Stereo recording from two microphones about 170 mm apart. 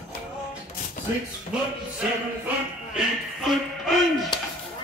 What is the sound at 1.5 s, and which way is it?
Speech, 5° right (ahead or behind).